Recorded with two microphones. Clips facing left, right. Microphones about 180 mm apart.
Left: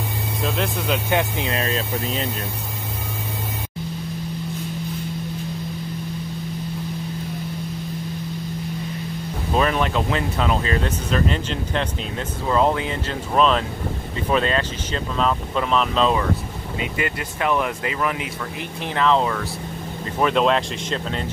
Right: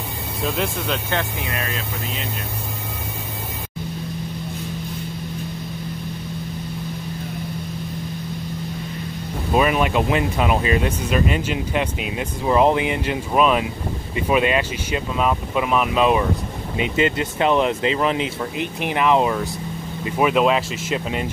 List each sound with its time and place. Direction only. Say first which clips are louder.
0.4 s speech: right 1 dB; centre (ahead or behind)
1.1 s speech: left 3 dB; 25° left (ahead or behind)
9.5 s speech: right 2 dB; 10° right (ahead or behind)